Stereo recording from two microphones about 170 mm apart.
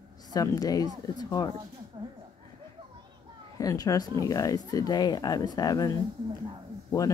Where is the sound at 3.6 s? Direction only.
20° left (ahead or behind).